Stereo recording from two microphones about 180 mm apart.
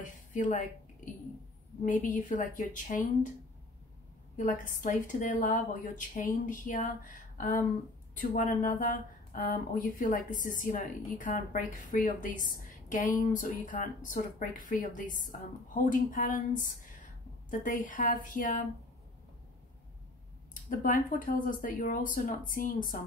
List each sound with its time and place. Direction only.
0.0 s speech: 45° left (ahead or behind)
1.9 s speech: 45° left (ahead or behind)
4.4 s speech: 45° left (ahead or behind)
20.7 s speech: 45° left (ahead or behind)